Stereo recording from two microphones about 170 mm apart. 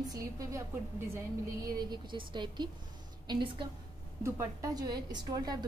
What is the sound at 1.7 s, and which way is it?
A woman's voice, 25° right (ahead or behind).